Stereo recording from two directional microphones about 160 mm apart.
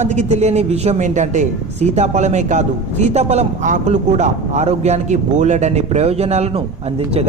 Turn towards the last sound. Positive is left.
turn(degrees=-40)  # may be behind; listen again after turning